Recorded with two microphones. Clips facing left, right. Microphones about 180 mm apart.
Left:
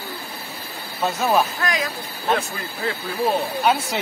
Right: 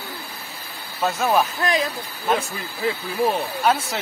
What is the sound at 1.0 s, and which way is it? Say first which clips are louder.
Speech: even; centre (ahead or behind).